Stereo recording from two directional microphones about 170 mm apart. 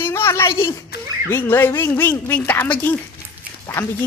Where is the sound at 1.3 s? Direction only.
15° left (ahead or behind).